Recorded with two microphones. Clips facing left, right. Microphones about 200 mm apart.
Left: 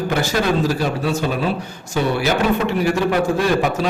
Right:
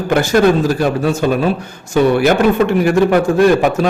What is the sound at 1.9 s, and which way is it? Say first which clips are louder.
A man's voice: right 7 dB; 55° right (ahead or behind).